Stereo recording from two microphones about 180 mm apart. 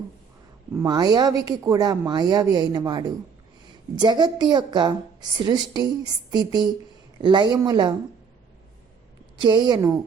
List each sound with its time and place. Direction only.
0.7 s speech: 20° right (ahead or behind)
9.4 s speech: 25° right (ahead or behind)